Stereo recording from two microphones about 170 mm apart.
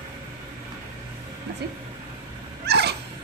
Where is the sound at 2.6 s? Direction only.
75° right (ahead or behind).